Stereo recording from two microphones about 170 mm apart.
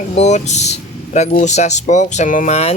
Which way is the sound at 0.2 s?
40° left (ahead or behind).